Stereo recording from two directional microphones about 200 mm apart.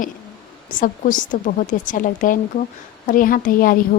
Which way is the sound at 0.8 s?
40° left (ahead or behind).